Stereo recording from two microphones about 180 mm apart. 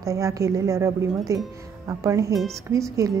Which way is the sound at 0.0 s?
15° right (ahead or behind).